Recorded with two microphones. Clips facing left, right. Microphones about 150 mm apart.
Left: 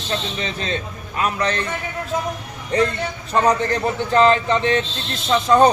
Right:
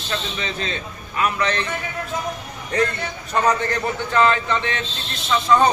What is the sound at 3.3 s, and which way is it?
A man's voice, 30° left (ahead or behind).